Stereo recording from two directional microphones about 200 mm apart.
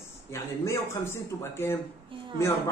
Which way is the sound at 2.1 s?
25° right (ahead or behind).